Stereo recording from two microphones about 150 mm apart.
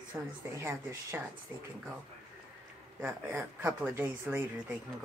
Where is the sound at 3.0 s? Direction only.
15° right (ahead or behind).